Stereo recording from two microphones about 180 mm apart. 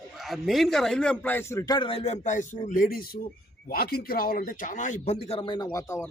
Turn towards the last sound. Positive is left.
turn(degrees=15)  # may be behind; listen again after turning